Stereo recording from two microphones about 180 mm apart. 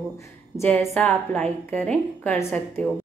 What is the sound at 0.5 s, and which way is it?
A woman's voice, 15° left (ahead or behind).